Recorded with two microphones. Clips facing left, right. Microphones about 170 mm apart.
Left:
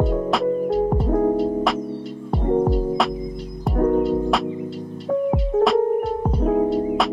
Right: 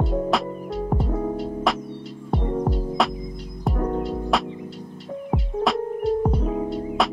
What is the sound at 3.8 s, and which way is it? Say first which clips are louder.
Music: left 8 dB; 55° left (ahead or behind).